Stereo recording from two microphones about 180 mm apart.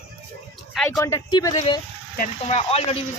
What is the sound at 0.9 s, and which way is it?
Speech, 15° left (ahead or behind).